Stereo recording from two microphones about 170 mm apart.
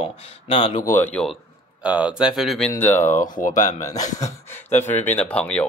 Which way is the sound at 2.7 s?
15° left (ahead or behind).